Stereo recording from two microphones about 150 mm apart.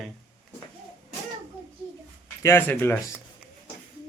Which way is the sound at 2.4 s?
15° left (ahead or behind).